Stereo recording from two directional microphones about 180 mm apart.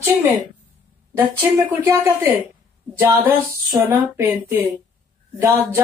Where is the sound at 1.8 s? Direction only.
15° right (ahead or behind).